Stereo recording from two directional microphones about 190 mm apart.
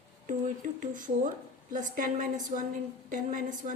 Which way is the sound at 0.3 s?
45° right (ahead or behind).